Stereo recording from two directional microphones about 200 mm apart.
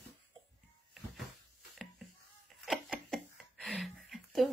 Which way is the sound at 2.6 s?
Centre (ahead or behind).